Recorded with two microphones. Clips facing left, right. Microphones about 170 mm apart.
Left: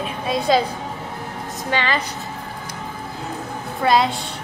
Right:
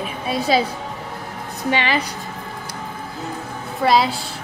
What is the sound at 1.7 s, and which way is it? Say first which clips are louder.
Speech: right 1 dB; 15° right (ahead or behind).